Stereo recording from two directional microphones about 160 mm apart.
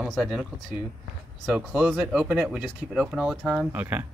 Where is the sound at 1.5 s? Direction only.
5° right (ahead or behind).